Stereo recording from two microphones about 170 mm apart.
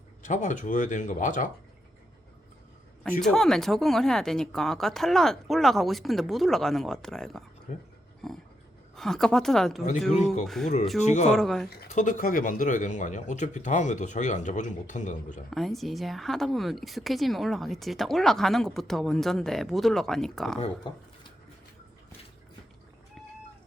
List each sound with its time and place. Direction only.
0.2 s speech: 45° left (ahead or behind)
3.0 s speech: centre (ahead or behind)
7.7 s speech: 45° left (ahead or behind)
9.0 s speech: 5° left (ahead or behind)
11.9 s speech: 50° left (ahead or behind)
15.4 s speech: centre (ahead or behind)